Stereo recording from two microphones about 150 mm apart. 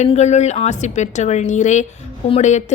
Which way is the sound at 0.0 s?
50° left (ahead or behind).